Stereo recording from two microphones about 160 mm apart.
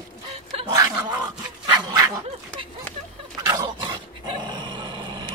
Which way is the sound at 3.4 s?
20° right (ahead or behind).